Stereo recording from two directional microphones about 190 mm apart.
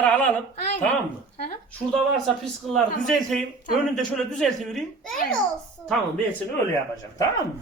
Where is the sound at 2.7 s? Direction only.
Centre (ahead or behind).